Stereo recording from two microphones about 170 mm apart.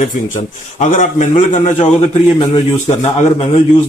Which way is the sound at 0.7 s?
45° left (ahead or behind).